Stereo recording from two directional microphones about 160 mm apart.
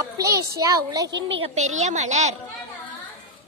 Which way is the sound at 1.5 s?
45° right (ahead or behind).